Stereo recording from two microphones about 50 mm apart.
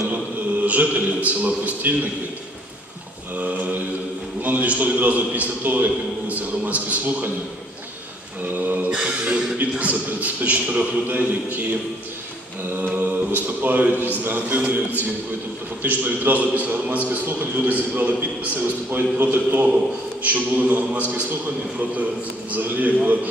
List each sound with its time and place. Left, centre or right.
0.7 s a man's voice: right
3.3 s mantra: right
4.4 s a man's voice: right
8.5 s mantra: right
9.6 s a man's voice: right
12.8 s mantra: right
14.2 s a man's voice: right
15.8 s a man's voice: right
22.5 s a man's voice: right